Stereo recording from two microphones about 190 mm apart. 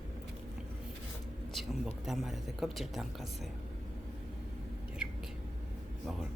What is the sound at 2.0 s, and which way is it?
A woman's voice, centre (ahead or behind).